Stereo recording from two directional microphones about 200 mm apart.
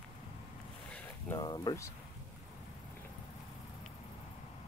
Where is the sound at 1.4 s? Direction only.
20° left (ahead or behind).